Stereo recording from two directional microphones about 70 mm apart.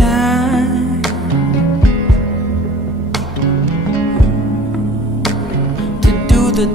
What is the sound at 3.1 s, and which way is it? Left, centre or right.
Music, centre.